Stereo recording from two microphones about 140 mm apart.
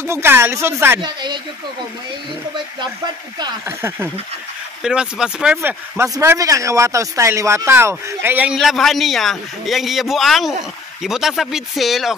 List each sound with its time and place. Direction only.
0.0 s speech: 15° right (ahead or behind)
1.0 s speech: 30° right (ahead or behind)
3.6 s speech: 20° right (ahead or behind)
4.8 s speech: 5° right (ahead or behind)
8.5 s a man's voice: centre (ahead or behind)